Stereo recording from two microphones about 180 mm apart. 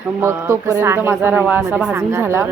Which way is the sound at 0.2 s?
15° right (ahead or behind).